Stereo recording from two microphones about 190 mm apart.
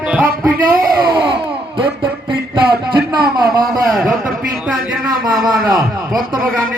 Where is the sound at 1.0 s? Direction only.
25° right (ahead or behind).